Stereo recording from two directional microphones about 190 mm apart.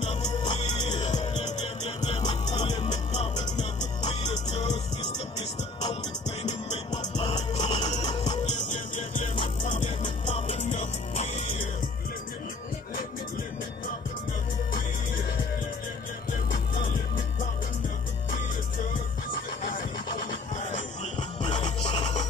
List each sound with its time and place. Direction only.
0.5 s music: 20° left (ahead or behind)
6.4 s music: 20° left (ahead or behind)
8.5 s music: 40° left (ahead or behind)
9.7 s music: 25° left (ahead or behind)
20.7 s music: 40° left (ahead or behind)